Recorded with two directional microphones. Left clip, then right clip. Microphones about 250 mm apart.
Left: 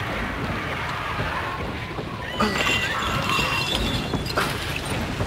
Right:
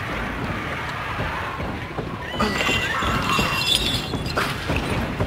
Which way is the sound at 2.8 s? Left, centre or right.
Left.